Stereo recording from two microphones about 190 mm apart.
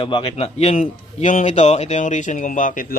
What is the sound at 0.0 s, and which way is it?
A man's voice, 25° left (ahead or behind).